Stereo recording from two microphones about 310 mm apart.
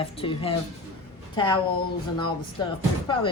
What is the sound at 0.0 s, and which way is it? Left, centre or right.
Speech, centre.